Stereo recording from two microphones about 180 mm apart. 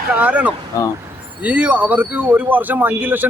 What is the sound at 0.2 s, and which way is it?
Speech, 5° right (ahead or behind).